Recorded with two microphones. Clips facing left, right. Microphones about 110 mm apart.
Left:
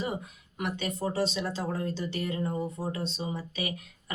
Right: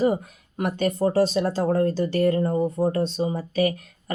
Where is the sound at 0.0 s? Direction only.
40° right (ahead or behind).